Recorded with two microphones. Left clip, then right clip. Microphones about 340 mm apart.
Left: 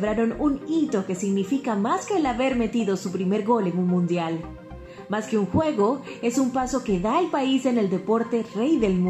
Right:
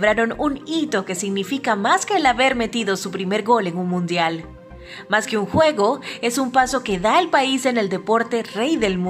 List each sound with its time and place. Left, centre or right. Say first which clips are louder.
0.0 s a woman's voice: right 6 dB; right